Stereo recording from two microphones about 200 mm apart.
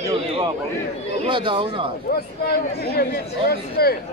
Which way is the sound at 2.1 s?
50° left (ahead or behind).